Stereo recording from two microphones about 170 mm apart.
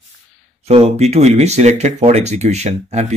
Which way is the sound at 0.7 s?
40° right (ahead or behind).